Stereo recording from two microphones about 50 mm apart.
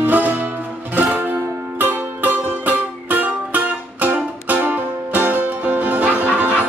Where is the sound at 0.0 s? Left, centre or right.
Right.